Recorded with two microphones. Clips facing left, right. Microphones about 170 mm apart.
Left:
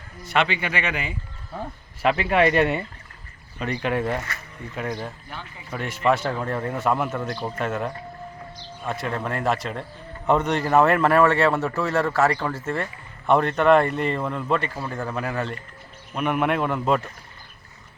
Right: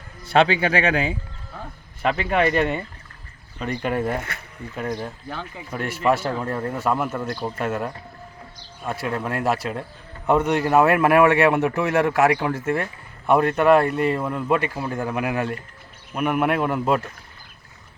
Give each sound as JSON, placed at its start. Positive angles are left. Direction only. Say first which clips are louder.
{"t": 0.3, "sound": "speech", "louder": "right 6 dB", "side_deg": -35}
{"t": 2.0, "sound": "a man's voice", "louder": "left 1 dB", "side_deg": 5}